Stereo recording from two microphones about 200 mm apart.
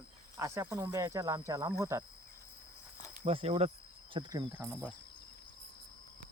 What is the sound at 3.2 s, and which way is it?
Speech, 30° right (ahead or behind).